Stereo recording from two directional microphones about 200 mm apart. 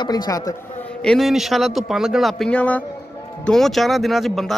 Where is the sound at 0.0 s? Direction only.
20° left (ahead or behind).